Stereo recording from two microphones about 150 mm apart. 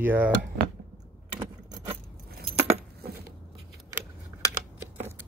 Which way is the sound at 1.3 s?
35° right (ahead or behind).